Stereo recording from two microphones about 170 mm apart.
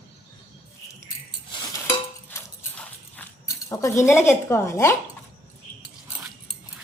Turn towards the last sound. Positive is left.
turn(degrees=15)  # may be behind; listen again after turning